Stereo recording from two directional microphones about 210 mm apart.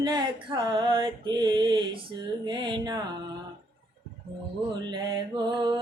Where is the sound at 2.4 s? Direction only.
20° right (ahead or behind).